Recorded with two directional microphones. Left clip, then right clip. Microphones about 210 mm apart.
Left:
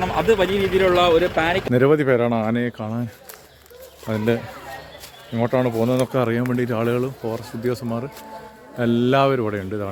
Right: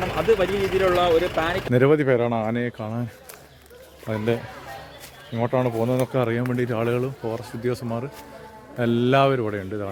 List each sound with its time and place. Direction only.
0.3 s a man's voice: 50° left (ahead or behind)
1.7 s speech: centre (ahead or behind)
4.0 s speech: centre (ahead or behind)